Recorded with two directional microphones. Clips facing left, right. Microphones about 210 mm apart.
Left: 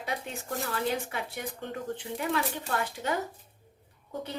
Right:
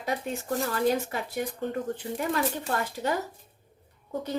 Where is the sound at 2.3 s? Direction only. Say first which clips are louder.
Right 2 dB; 40° right (ahead or behind).